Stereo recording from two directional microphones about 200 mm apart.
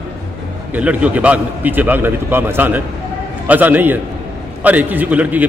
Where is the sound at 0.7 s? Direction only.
5° right (ahead or behind).